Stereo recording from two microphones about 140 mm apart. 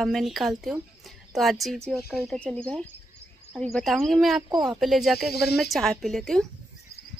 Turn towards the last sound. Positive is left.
turn(degrees=0)  # may be behind; listen again after turning